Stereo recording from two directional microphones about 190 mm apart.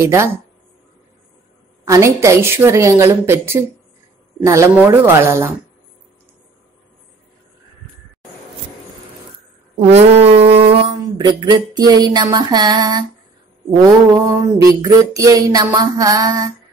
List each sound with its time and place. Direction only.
0.0 s a woman's voice: 15° right (ahead or behind)
1.9 s a woman's voice: 15° right (ahead or behind)
9.8 s a sound: 35° right (ahead or behind)
13.7 s music: 20° right (ahead or behind)